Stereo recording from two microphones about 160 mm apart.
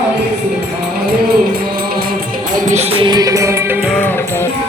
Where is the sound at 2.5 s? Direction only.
50° right (ahead or behind); by 3.7 s 15° right (ahead or behind).